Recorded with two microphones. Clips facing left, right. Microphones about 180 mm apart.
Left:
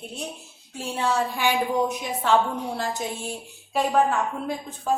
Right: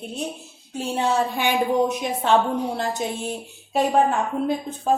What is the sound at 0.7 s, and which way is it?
A woman's voice, 20° right (ahead or behind).